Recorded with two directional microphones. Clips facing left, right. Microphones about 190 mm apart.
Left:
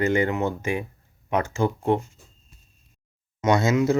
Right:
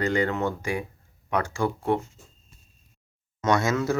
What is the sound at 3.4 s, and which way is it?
Speech, 20° left (ahead or behind).